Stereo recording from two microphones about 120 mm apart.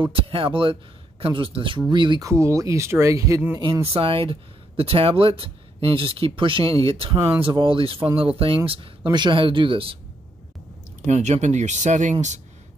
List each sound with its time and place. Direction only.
0.0 s speech: 50° right (ahead or behind)
2.2 s speech: 25° right (ahead or behind)
3.8 s speech: 50° right (ahead or behind)
7.2 s speech: 20° right (ahead or behind)
7.4 s speech: 45° right (ahead or behind)
9.0 s speech: 40° right (ahead or behind)
11.1 s speech: 70° right (ahead or behind)